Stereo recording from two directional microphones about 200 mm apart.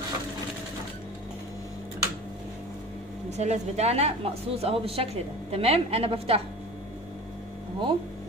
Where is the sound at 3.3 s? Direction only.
35° right (ahead or behind).